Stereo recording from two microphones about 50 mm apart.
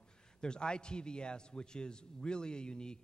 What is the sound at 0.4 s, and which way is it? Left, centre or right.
A man's voice, centre.